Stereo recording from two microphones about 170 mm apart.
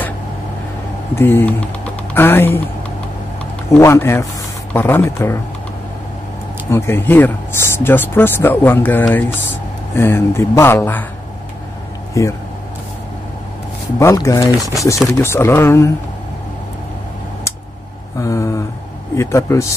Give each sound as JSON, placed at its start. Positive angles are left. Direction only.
{"t": 1.1, "sound": "speech", "side_deg": 10}
{"t": 3.7, "sound": "speech", "side_deg": 15}
{"t": 6.7, "sound": "speech", "side_deg": 10}
{"t": 12.1, "sound": "speech", "side_deg": 20}
{"t": 13.9, "sound": "speech", "side_deg": 20}
{"t": 18.2, "sound": "speech", "side_deg": 20}